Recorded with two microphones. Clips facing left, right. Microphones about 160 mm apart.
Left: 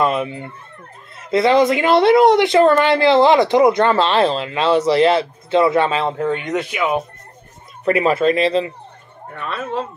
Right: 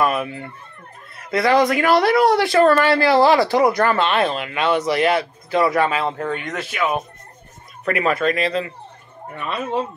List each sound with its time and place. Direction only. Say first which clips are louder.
0.0 s speech: left 2 dB; 25° left (ahead or behind)
6.1 s speech: left 5 dB; 15° left (ahead or behind)
7.8 s speech: left 4 dB; 30° left (ahead or behind)
9.5 s speech: right 1 dB; 15° right (ahead or behind)